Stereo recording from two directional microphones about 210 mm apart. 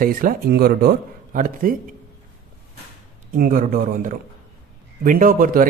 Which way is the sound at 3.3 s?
45° right (ahead or behind).